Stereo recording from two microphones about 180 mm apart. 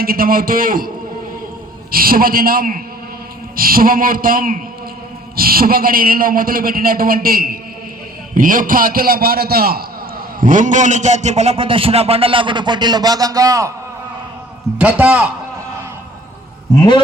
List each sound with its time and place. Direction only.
0.0 s a man's voice: 55° right (ahead or behind)
1.9 s a man's voice: 55° right (ahead or behind)
10.4 s a man's voice: 45° right (ahead or behind); by 13.7 s 20° right (ahead or behind)
14.8 s a man's voice: 10° right (ahead or behind)